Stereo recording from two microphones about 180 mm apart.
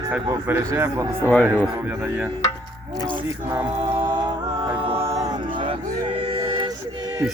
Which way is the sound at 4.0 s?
25° right (ahead or behind).